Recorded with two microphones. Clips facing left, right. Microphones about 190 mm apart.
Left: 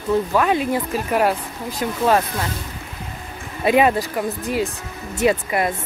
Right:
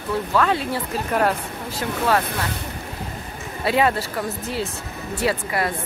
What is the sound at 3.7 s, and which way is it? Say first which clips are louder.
Speech: left 4 dB; 15° left (ahead or behind).